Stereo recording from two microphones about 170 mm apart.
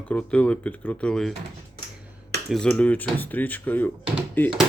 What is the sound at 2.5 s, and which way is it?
Speech, 5° left (ahead or behind).